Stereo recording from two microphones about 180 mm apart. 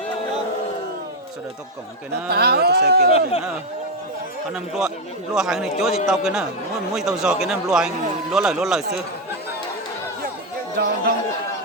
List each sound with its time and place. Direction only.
2.3 s speech: 60° right (ahead or behind)
3.1 s speech: 35° left (ahead or behind)
4.5 s speech: centre (ahead or behind)
10.8 s speech: 60° right (ahead or behind)